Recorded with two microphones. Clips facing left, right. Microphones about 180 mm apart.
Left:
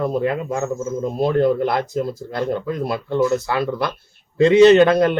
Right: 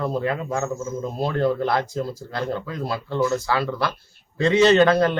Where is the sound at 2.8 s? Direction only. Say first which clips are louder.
Left 3 dB; 20° left (ahead or behind).